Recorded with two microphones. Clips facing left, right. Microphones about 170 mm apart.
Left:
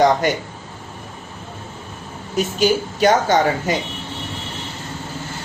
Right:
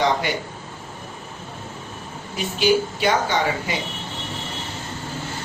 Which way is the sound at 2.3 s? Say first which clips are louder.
Left 2 dB; 45° left (ahead or behind).